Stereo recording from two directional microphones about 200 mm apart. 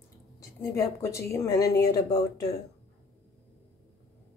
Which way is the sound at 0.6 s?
15° left (ahead or behind).